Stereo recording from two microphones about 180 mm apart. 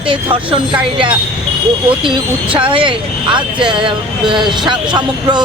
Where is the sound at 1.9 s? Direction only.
30° right (ahead or behind).